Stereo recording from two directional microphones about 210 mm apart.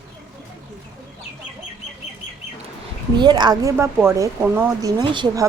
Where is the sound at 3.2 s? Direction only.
20° right (ahead or behind).